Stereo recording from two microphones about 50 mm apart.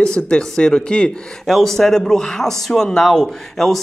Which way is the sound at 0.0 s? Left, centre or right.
Centre.